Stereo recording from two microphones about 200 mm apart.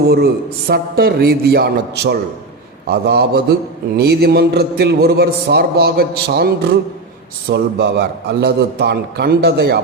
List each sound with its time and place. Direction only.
0.7 s a man's voice: 50° right (ahead or behind)